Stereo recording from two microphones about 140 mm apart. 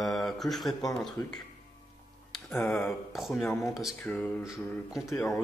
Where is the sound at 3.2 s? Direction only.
Centre (ahead or behind).